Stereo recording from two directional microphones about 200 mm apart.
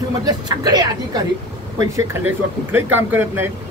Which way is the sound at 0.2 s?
20° right (ahead or behind).